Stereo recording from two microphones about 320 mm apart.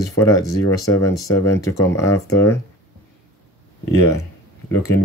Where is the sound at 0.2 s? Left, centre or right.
Centre.